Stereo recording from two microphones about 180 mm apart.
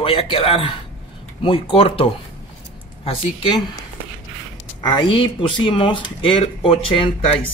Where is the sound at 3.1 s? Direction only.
25° left (ahead or behind).